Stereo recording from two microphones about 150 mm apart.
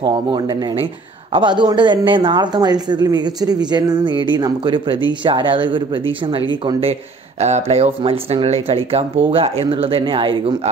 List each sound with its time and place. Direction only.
0.0 s speech: 30° right (ahead or behind)